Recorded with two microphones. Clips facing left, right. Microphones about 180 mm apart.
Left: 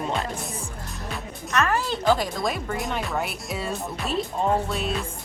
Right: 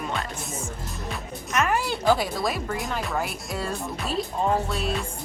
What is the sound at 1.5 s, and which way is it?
Speech, 15° right (ahead or behind).